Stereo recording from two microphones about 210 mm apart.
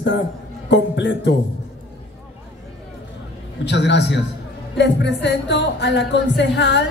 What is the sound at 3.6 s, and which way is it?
A woman's voice, 55° left (ahead or behind).